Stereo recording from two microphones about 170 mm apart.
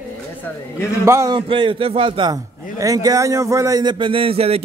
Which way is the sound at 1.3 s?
30° right (ahead or behind).